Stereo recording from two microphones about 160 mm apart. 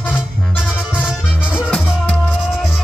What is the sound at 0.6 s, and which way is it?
Music, 5° right (ahead or behind).